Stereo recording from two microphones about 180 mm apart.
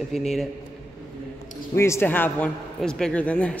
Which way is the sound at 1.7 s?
15° left (ahead or behind).